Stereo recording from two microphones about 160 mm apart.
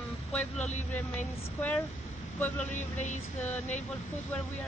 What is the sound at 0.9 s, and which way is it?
Speech, 10° left (ahead or behind).